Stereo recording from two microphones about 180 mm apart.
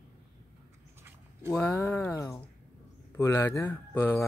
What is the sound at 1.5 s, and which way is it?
Speech, 10° left (ahead or behind).